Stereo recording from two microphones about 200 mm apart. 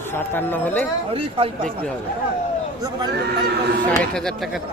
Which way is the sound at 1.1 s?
30° right (ahead or behind).